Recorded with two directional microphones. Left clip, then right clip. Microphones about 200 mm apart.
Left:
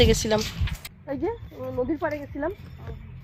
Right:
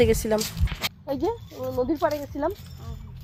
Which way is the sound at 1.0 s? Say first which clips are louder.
Even; 20° right (ahead or behind).